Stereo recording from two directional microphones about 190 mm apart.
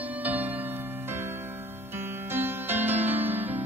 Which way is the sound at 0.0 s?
10° right (ahead or behind).